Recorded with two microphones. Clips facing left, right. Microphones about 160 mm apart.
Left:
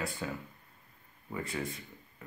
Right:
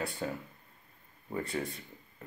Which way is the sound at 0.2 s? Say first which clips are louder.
Right 2 dB; 40° right (ahead or behind).